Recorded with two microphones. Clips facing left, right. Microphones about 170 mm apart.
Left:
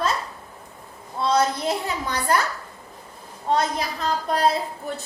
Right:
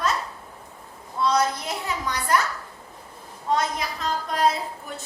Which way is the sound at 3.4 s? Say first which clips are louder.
Left 2 dB; 35° left (ahead or behind).